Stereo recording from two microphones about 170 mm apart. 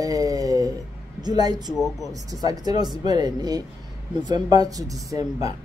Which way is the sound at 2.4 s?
25° right (ahead or behind).